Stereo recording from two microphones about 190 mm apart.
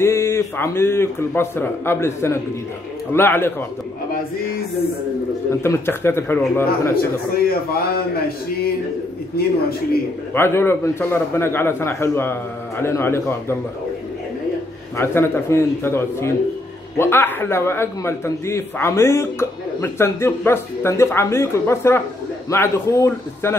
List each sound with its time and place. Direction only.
0.0 s a man's voice: 15° left (ahead or behind)
4.1 s speech: 55° left (ahead or behind)
5.6 s a man's voice: 15° left (ahead or behind)
7.0 s a man's voice: 50° left (ahead or behind)
10.3 s a man's voice: 10° left (ahead or behind)
15.0 s a man's voice: 10° left (ahead or behind)